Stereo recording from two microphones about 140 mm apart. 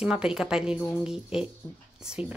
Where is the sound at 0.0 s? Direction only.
5° right (ahead or behind).